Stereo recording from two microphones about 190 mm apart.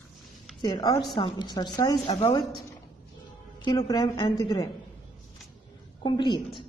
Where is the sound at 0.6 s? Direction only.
25° left (ahead or behind).